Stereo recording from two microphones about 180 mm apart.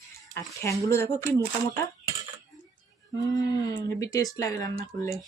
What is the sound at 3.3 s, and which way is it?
Speech, 20° left (ahead or behind).